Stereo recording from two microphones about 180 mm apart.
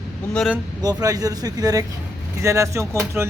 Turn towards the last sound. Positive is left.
turn(degrees=-15)  # may be behind; listen again after turning